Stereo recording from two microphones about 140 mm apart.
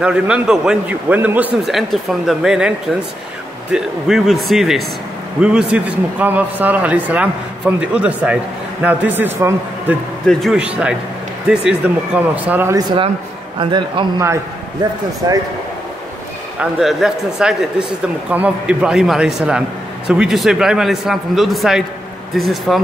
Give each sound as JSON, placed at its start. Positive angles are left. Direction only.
{"t": 0.0, "sound": "a man's voice", "side_deg": -5}
{"t": 1.6, "sound": "a man's voice", "side_deg": 0}
{"t": 3.7, "sound": "a man's voice", "side_deg": 0}
{"t": 10.2, "sound": "a man's voice", "side_deg": 0}
{"t": 12.7, "sound": "a man's voice", "side_deg": -35}
{"t": 16.5, "sound": "a man's voice", "side_deg": -5}